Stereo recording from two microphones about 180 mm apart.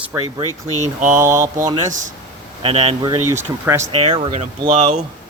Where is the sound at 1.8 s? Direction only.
45° right (ahead or behind).